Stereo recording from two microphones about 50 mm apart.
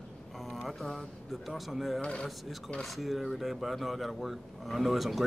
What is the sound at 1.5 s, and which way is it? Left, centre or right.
Speech, centre.